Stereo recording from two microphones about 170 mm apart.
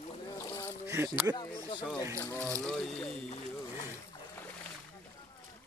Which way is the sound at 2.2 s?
15° left (ahead or behind).